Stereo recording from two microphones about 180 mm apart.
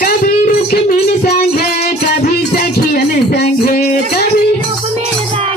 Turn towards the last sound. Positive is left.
turn(degrees=55)  # may be behind; listen again after turning